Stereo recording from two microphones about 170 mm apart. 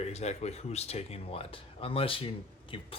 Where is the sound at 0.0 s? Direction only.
40° left (ahead or behind).